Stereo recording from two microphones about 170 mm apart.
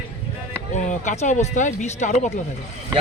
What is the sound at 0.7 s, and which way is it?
Speech, 45° left (ahead or behind).